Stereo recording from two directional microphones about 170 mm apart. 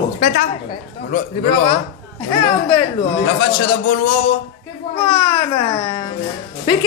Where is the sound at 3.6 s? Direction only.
60° left (ahead or behind).